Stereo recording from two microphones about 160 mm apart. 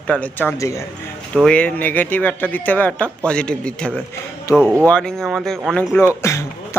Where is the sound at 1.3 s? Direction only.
5° left (ahead or behind).